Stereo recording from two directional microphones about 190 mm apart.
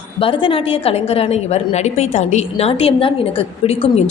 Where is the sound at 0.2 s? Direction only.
30° left (ahead or behind).